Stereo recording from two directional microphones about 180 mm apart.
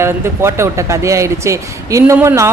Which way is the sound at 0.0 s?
15° right (ahead or behind).